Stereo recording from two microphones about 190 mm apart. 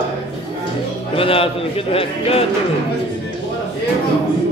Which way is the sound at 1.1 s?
30° left (ahead or behind).